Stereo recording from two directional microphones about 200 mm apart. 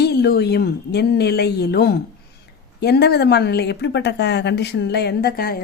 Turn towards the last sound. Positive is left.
turn(degrees=50)  # may be behind; listen again after turning